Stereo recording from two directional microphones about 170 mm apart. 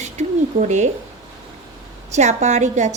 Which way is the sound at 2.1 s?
45° right (ahead or behind).